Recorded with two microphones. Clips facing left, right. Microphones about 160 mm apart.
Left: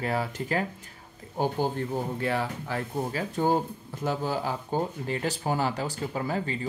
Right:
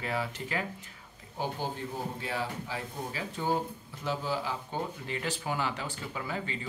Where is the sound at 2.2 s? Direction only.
60° left (ahead or behind).